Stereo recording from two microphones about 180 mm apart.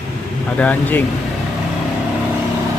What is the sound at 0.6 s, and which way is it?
Speech, 10° left (ahead or behind).